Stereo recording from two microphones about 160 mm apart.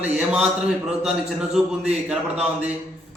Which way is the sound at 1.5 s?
5° right (ahead or behind).